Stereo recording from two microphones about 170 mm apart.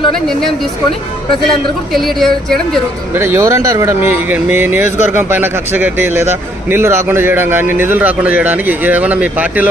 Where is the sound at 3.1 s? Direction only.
15° right (ahead or behind).